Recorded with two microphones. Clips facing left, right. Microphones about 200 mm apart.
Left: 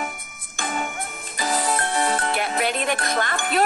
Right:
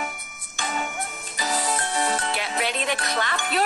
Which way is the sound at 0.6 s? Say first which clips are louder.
Left 1 dB; 50° left (ahead or behind).